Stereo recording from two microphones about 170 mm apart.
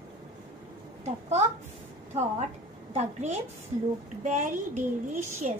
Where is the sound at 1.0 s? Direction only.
40° right (ahead or behind).